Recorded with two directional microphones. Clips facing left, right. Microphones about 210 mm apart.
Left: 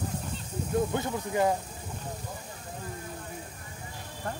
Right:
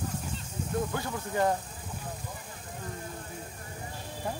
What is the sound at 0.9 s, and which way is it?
Speech, 20° left (ahead or behind).